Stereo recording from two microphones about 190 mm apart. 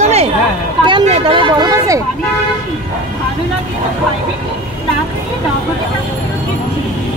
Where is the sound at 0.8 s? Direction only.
30° right (ahead or behind).